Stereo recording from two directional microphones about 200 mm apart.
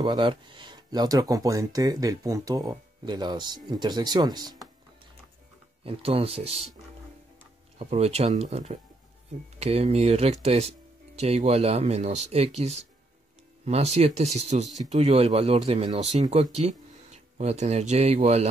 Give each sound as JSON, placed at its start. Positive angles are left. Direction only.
{"t": 0.0, "sound": "speech", "side_deg": -25}
{"t": 5.9, "sound": "speech", "side_deg": -30}
{"t": 7.8, "sound": "speech", "side_deg": -30}